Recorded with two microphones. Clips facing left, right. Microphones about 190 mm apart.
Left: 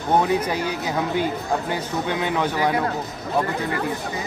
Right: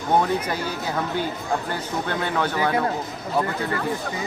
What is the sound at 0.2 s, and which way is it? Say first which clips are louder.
Speech: left 2 dB; 10° left (ahead or behind).